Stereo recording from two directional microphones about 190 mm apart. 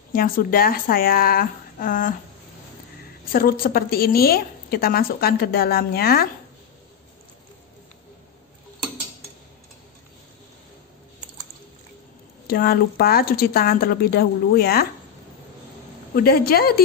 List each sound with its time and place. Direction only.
0.1 s a woman's voice: 50° left (ahead or behind)
3.3 s a woman's voice: 50° left (ahead or behind)
12.4 s a woman's voice: 55° left (ahead or behind)
16.2 s a woman's voice: 55° left (ahead or behind)